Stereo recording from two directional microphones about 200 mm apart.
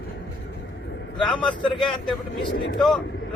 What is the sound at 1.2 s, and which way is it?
Speech, 5° left (ahead or behind).